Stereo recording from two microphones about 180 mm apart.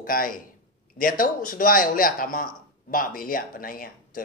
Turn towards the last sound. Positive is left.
turn(degrees=50)  # may be behind; listen again after turning